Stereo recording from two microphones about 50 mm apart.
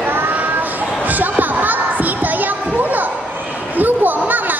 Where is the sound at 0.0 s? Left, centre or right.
Right.